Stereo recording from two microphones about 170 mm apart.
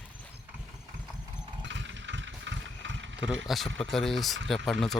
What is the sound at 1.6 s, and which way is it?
Engine, 90° right.